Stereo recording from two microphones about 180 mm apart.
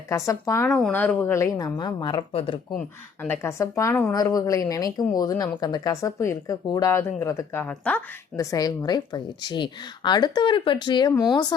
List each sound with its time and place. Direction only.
0.1 s speech: 15° left (ahead or behind)
2.7 s speech: 10° left (ahead or behind)
8.4 s speech: 20° left (ahead or behind)